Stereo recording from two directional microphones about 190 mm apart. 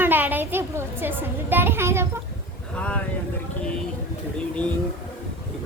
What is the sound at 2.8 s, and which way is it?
Speech, 5° left (ahead or behind).